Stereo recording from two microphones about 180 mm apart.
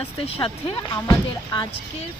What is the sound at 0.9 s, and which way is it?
Speech, 15° left (ahead or behind).